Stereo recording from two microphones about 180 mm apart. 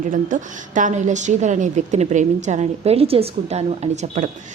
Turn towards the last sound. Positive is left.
turn(degrees=-40)  # may be behind; listen again after turning